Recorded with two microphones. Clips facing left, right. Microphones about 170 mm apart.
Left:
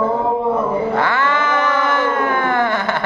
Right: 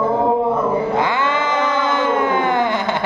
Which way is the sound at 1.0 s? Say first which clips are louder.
Left 1 dB; 15° right (ahead or behind).